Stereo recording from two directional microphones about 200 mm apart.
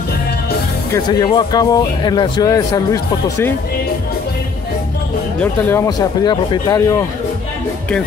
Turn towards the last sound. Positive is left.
turn(degrees=15)  # may be behind; listen again after turning